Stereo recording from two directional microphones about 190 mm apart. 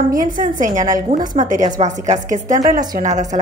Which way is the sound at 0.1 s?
45° right (ahead or behind).